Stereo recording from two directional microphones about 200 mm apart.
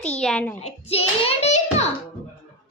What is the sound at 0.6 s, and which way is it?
Hands, 30° left (ahead or behind).